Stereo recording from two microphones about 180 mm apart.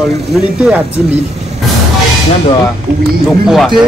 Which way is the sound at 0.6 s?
5° right (ahead or behind).